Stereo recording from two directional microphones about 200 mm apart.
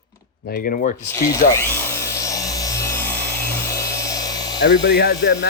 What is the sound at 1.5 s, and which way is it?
Tools, 15° left (ahead or behind).